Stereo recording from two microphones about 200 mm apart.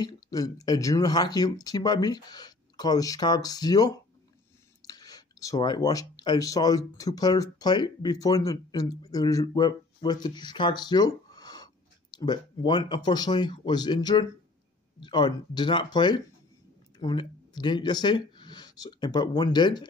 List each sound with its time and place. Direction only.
0.0 s speech: 20° left (ahead or behind)